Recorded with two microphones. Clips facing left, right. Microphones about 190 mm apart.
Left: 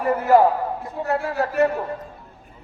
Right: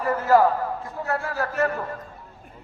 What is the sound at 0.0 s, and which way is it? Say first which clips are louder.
A man's voice: left 3 dB; 15° left (ahead or behind).